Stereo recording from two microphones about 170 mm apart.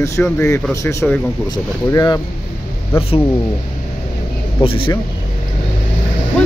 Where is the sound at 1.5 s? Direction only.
20° left (ahead or behind).